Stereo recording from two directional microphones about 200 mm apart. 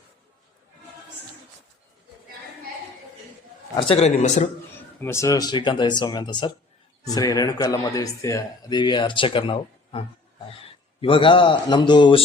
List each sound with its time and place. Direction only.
3.8 s a man's voice: 30° left (ahead or behind)
4.9 s speech: 15° left (ahead or behind)
11.0 s speech: 25° left (ahead or behind)